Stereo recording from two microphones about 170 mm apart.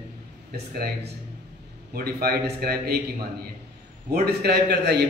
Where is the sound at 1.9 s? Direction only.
65° right (ahead or behind).